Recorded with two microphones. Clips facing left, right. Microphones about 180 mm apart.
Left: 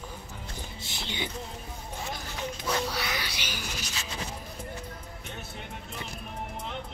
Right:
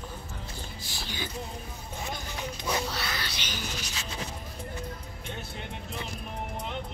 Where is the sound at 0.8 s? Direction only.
20° left (ahead or behind).